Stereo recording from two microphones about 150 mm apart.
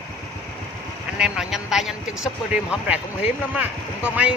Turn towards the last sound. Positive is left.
turn(degrees=-10)  # may be behind; listen again after turning